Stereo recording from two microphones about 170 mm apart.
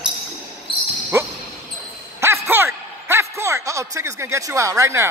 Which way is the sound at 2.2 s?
15° right (ahead or behind).